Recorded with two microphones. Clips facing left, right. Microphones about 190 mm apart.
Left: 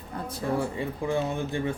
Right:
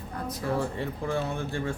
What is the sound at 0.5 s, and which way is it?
Speech, 15° left (ahead or behind).